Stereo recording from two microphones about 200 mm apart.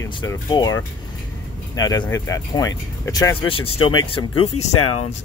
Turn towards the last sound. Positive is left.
turn(degrees=90)